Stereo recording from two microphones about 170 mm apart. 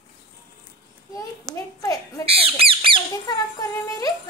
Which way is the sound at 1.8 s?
20° left (ahead or behind).